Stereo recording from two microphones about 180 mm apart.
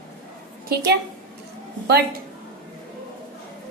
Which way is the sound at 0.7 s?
60° right (ahead or behind).